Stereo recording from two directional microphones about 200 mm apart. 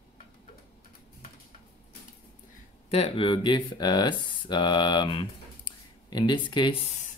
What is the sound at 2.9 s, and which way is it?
Speech, 30° left (ahead or behind).